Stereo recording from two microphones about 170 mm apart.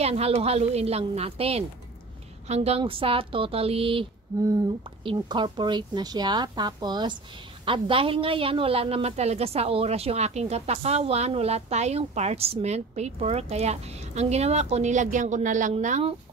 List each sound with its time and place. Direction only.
0.0 s a woman's voice: 35° right (ahead or behind)